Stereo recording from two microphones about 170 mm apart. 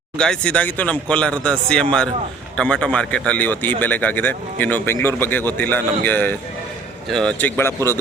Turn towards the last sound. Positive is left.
turn(degrees=15)  # may be behind; listen again after turning